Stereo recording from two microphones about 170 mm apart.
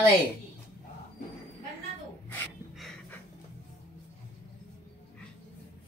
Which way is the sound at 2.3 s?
10° left (ahead or behind).